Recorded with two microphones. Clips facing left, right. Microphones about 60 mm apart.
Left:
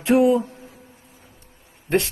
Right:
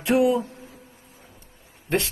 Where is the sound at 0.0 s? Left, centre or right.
Left.